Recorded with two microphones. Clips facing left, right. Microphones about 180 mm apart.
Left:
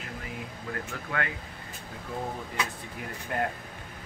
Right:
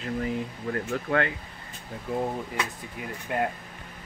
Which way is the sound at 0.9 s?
35° right (ahead or behind).